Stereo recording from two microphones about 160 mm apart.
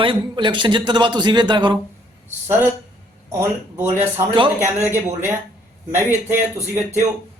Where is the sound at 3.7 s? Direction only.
15° right (ahead or behind).